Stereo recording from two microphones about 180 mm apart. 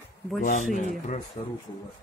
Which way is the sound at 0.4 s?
45° left (ahead or behind).